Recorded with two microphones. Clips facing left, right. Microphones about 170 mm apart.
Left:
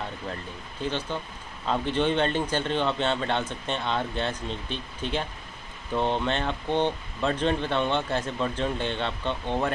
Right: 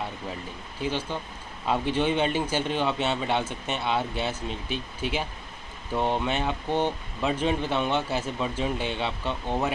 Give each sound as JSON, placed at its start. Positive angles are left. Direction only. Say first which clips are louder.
{"t": 1.1, "sound": "speech", "louder": "even", "side_deg": -10}